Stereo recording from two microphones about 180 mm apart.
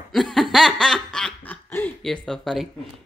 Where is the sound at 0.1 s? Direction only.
Centre (ahead or behind).